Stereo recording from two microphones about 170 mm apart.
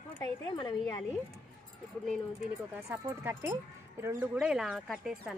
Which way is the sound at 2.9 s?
15° right (ahead or behind).